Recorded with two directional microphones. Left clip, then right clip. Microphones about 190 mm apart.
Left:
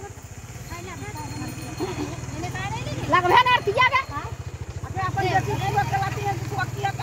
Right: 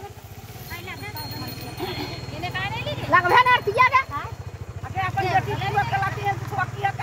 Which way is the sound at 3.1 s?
50° left (ahead or behind).